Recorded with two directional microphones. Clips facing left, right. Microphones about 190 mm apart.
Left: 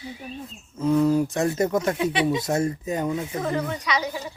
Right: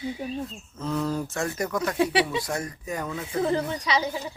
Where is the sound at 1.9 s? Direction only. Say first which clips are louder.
Right 1 dB; 35° right (ahead or behind).